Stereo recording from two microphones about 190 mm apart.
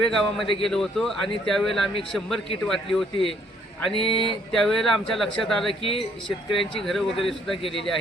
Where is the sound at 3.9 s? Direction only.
25° right (ahead or behind).